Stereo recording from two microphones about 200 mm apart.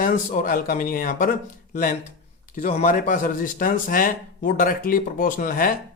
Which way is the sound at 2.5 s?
35° left (ahead or behind).